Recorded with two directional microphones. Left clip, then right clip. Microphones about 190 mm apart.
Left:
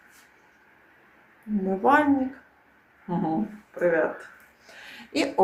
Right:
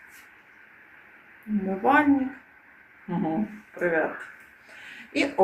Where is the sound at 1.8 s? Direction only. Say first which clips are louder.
Left 1 dB; 15° left (ahead or behind).